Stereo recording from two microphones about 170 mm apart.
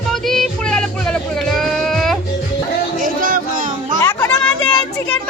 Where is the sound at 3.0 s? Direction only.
55° right (ahead or behind).